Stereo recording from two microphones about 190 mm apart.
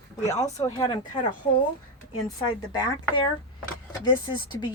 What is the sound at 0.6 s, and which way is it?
Speech, 20° left (ahead or behind).